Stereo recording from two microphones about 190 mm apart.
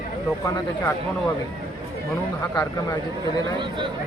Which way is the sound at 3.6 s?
25° right (ahead or behind).